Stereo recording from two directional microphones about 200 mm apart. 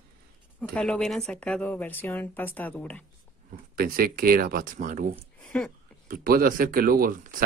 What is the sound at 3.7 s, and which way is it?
Speech, 45° right (ahead or behind).